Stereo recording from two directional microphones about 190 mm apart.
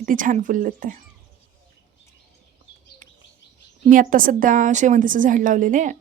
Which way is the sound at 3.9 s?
45° right (ahead or behind).